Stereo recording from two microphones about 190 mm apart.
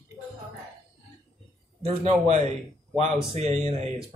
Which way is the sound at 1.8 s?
35° right (ahead or behind).